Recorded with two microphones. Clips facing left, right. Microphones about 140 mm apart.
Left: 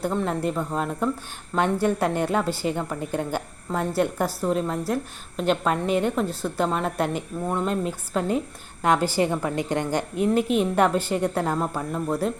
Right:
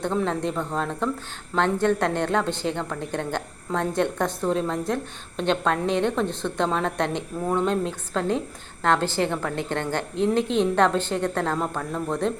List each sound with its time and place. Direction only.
0.0 s a woman's voice: 5° left (ahead or behind)